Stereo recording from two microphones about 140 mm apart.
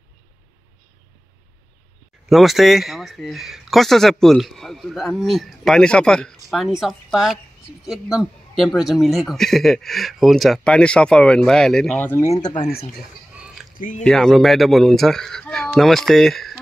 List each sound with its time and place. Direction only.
2.2 s speech: centre (ahead or behind); by 12.4 s 15° left (ahead or behind)
12.4 s speech: 30° left (ahead or behind)
13.3 s a sound: 10° right (ahead or behind)
13.7 s speech: 70° left (ahead or behind)
14.0 s speech: 5° left (ahead or behind)